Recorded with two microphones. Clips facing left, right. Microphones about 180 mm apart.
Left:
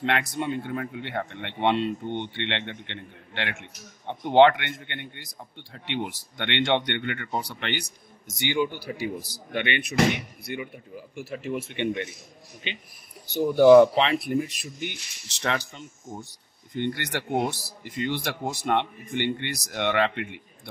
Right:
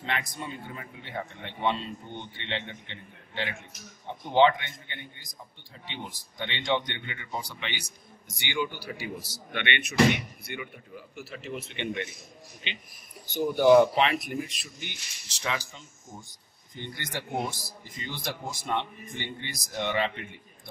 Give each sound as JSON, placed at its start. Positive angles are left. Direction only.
{"t": 0.0, "sound": "speech", "side_deg": 70}
{"t": 8.9, "sound": "speech", "side_deg": 30}
{"t": 13.3, "sound": "speech", "side_deg": 30}
{"t": 14.6, "sound": "speech", "side_deg": 50}